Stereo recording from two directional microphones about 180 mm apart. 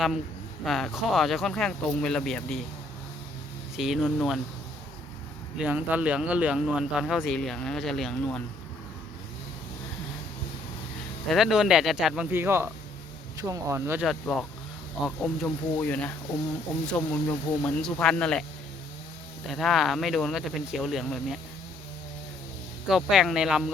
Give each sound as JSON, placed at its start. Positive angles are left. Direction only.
{"t": 0.6, "sound": "speech", "side_deg": 0}
{"t": 3.8, "sound": "speech", "side_deg": 0}
{"t": 5.5, "sound": "speech", "side_deg": -10}
{"t": 11.3, "sound": "speech", "side_deg": 0}
{"t": 14.0, "sound": "speech", "side_deg": 0}
{"t": 19.5, "sound": "speech", "side_deg": 0}
{"t": 22.9, "sound": "speech", "side_deg": 0}